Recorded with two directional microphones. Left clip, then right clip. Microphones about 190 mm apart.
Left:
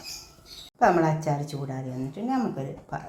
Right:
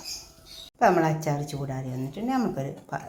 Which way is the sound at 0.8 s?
20° right (ahead or behind).